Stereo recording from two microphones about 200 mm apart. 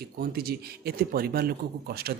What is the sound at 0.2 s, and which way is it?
Speech, 50° right (ahead or behind).